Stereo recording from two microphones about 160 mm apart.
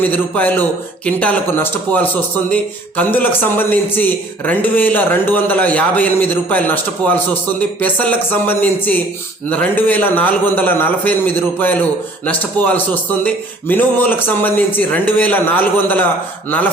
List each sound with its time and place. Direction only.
0.0 s speech: 10° left (ahead or behind)